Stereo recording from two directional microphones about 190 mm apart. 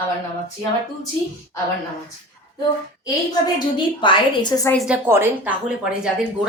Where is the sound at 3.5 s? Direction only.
25° left (ahead or behind).